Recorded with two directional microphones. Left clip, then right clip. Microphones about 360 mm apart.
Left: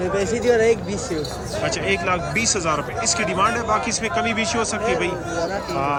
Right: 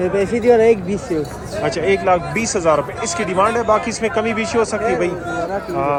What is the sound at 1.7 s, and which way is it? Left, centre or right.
Speech, centre.